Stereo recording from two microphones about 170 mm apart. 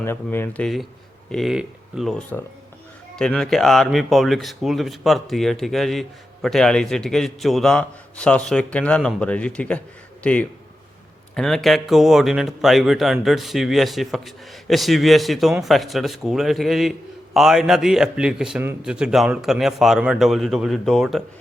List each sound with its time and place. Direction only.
0.0 s a man's voice: 15° left (ahead or behind)